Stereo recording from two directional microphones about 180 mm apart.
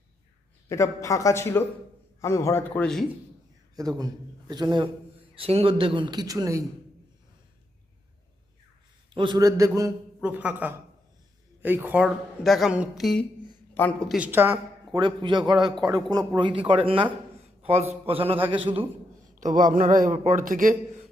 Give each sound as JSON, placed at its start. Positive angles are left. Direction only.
{"t": 0.7, "sound": "a man's voice", "side_deg": 15}
{"t": 3.9, "sound": "a man's voice", "side_deg": -20}
{"t": 9.1, "sound": "a woman's voice", "side_deg": -25}
{"t": 14.2, "sound": "a woman's voice", "side_deg": -10}
{"t": 14.9, "sound": "a man's voice", "side_deg": -25}
{"t": 19.4, "sound": "a man's voice", "side_deg": -45}